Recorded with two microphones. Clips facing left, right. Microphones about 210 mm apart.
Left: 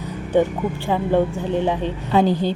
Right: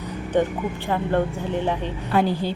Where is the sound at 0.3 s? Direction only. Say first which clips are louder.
Left 4 dB; 10° left (ahead or behind).